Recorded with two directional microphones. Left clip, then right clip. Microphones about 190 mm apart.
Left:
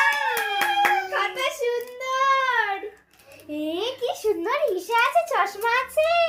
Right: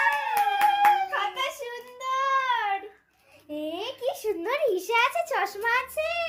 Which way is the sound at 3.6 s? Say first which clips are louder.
Left 5 dB; 30° right (ahead or behind).